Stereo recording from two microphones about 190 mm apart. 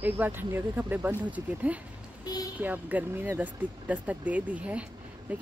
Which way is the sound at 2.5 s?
10° right (ahead or behind).